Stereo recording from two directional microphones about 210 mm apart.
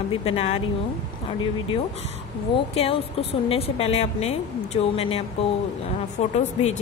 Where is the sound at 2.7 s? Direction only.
30° left (ahead or behind).